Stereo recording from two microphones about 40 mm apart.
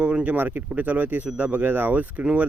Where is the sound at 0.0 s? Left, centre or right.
Right.